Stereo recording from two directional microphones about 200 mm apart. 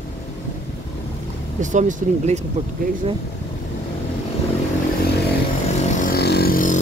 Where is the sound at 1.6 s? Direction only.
40° right (ahead or behind).